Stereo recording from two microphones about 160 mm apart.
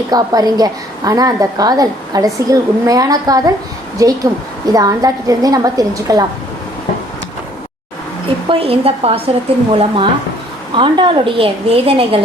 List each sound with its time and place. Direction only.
0.1 s a woman's voice: 25° right (ahead or behind)
8.4 s a woman's voice: 35° right (ahead or behind)